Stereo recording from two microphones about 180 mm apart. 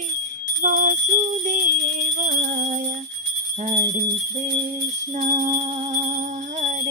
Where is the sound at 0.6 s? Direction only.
45° right (ahead or behind).